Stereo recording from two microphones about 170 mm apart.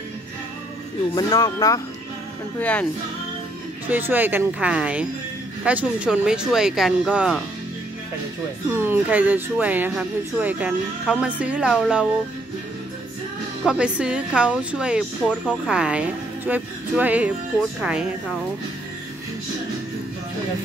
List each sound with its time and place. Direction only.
1.1 s speech: 20° left (ahead or behind)
2.6 s speech: 10° left (ahead or behind)
3.9 s a woman's voice: 10° right (ahead or behind)
8.6 s a woman's voice: 15° right (ahead or behind)
13.7 s a woman's voice: 5° right (ahead or behind)